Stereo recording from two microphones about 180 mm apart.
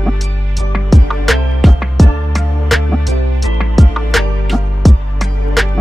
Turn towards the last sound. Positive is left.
turn(degrees=0)  # may be behind; listen again after turning